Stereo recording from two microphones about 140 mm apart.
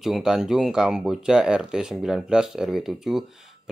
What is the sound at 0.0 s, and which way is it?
Speech, 5° right (ahead or behind).